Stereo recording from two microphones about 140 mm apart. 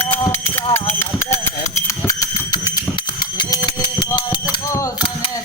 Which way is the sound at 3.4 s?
30° left (ahead or behind).